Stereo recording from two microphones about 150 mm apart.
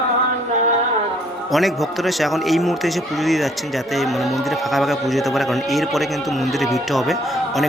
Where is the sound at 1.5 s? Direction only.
Centre (ahead or behind).